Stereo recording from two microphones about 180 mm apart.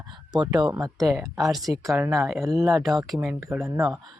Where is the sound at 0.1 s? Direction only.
25° right (ahead or behind).